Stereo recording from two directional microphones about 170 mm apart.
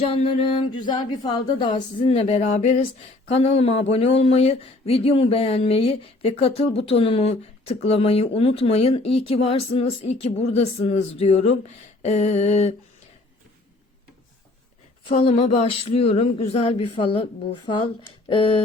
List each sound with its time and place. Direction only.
0.0 s speech: 35° left (ahead or behind)
15.0 s speech: 35° left (ahead or behind)